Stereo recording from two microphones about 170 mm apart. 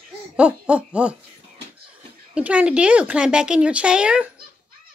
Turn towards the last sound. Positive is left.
turn(degrees=-5)  # may be behind; listen again after turning